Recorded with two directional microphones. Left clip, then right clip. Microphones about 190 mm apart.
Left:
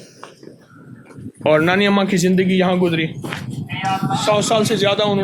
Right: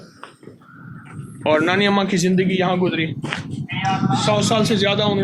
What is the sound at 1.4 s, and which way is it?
A man's voice, 60° left (ahead or behind).